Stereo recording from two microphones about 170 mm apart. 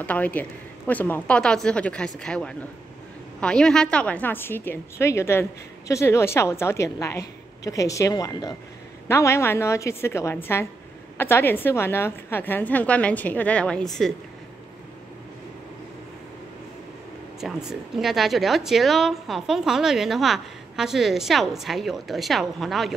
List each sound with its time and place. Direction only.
0.0 s a woman's voice: 10° left (ahead or behind)
17.4 s speech: 5° right (ahead or behind)